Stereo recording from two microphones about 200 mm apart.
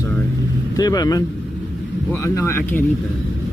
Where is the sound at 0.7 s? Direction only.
20° left (ahead or behind).